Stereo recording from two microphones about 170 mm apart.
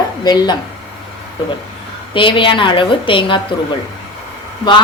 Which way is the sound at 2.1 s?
30° left (ahead or behind).